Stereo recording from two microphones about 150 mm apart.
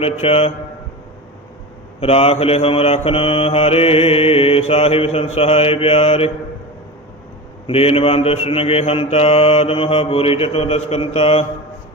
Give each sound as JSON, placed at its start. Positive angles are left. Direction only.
{"t": 0.0, "sound": "a man's voice", "side_deg": 40}
{"t": 2.0, "sound": "mantra", "side_deg": 40}
{"t": 7.7, "sound": "mantra", "side_deg": 40}